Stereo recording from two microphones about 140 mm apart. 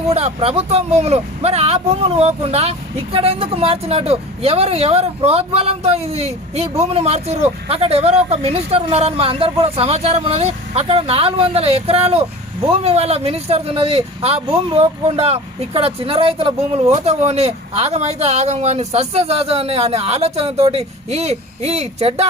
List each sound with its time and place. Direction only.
0.1 s speech: 45° right (ahead or behind)